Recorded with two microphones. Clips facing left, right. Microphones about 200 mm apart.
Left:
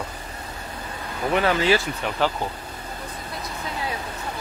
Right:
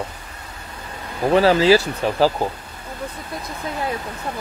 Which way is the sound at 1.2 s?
30° right (ahead or behind).